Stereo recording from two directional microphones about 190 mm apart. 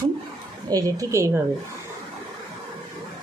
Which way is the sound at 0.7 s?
15° right (ahead or behind).